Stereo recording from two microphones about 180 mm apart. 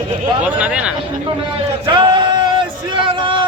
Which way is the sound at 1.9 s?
25° right (ahead or behind).